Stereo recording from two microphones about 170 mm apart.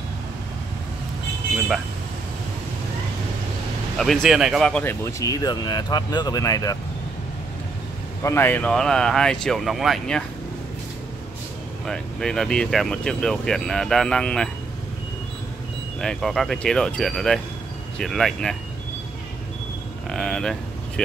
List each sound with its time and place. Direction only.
4.0 s speech: centre (ahead or behind)
5.2 s speech: 20° left (ahead or behind)
8.2 s speech: 15° left (ahead or behind)
11.8 s speech: 5° left (ahead or behind)
16.0 s speech: centre (ahead or behind)
20.1 s a sound: 5° left (ahead or behind)